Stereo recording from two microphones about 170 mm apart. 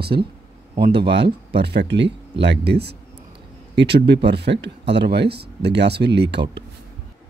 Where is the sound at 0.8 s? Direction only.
80° right.